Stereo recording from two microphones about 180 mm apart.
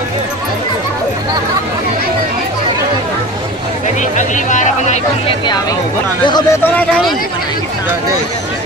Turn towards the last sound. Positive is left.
turn(degrees=10)  # may be behind; listen again after turning